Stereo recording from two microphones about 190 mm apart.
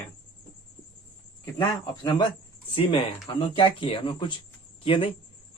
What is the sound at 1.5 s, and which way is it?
Speech, 25° left (ahead or behind).